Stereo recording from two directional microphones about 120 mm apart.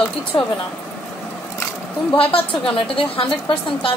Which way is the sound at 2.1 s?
50° left (ahead or behind).